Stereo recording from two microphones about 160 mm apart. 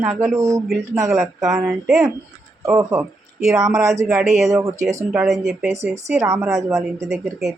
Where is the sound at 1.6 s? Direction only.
5° right (ahead or behind).